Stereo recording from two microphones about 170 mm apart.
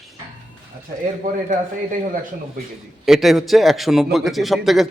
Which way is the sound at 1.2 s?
45° right (ahead or behind).